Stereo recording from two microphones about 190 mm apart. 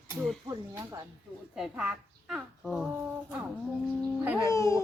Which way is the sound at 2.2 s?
Centre (ahead or behind).